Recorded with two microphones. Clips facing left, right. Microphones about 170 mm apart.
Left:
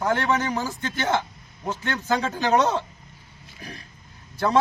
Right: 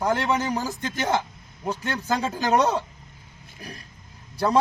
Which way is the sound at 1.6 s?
10° right (ahead or behind).